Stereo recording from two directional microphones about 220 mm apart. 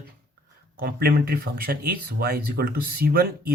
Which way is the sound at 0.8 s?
45° right (ahead or behind).